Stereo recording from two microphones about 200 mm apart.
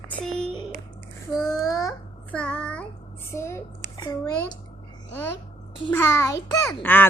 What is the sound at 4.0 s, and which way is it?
Speech, 20° left (ahead or behind).